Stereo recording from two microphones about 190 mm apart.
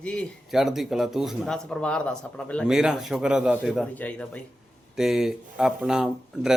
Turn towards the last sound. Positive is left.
turn(degrees=-5)  # may be behind; listen again after turning